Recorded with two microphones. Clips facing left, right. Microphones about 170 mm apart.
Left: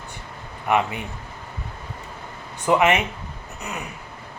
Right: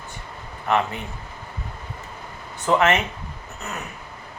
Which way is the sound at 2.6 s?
15° left (ahead or behind).